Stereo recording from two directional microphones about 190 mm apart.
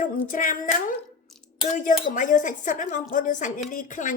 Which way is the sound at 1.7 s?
40° left (ahead or behind).